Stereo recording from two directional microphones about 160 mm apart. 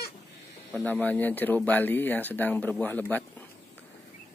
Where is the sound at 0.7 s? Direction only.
10° left (ahead or behind).